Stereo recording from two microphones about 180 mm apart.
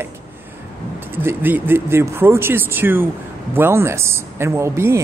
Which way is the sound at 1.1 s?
10° right (ahead or behind).